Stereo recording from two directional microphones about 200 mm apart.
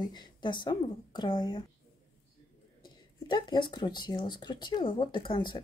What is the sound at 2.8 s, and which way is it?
Speech, 20° left (ahead or behind).